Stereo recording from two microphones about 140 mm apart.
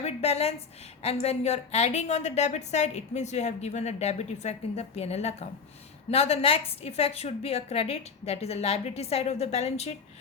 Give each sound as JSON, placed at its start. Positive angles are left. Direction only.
{"t": 0.0, "sound": "a woman's voice", "side_deg": 50}